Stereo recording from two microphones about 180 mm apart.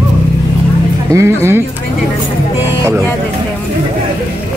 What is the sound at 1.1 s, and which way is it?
Speech, 15° right (ahead or behind).